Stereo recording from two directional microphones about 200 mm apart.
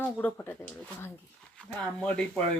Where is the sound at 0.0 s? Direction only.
10° left (ahead or behind).